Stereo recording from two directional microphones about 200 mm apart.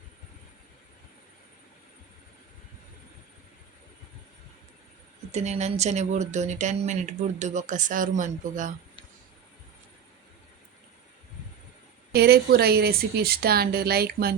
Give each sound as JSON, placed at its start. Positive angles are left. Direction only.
{"t": 5.3, "sound": "speech", "side_deg": -35}
{"t": 12.1, "sound": "a woman's voice", "side_deg": -50}